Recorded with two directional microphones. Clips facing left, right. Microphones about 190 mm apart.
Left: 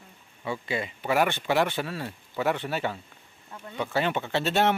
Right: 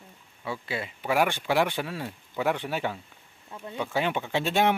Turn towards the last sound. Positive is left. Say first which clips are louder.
# even
turn(degrees=-10)  # may be behind; listen again after turning